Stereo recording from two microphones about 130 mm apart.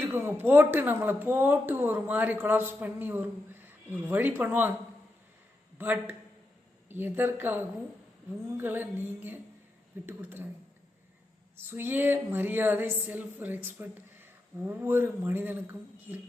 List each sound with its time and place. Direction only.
0.0 s speech: 15° right (ahead or behind)
5.7 s a man's voice: 15° right (ahead or behind)
11.5 s speech: 15° right (ahead or behind)